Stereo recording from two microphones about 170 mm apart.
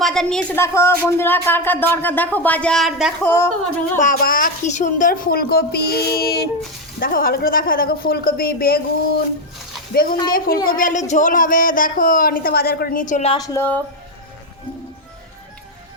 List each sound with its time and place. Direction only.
0.0 s a woman's voice: centre (ahead or behind)
0.6 s speech: 15° left (ahead or behind)
3.2 s speech: 15° left (ahead or behind)
3.9 s a woman's voice: 55° left (ahead or behind)
9.9 s a woman's voice: 60° left (ahead or behind)
13.3 s speech: 15° left (ahead or behind)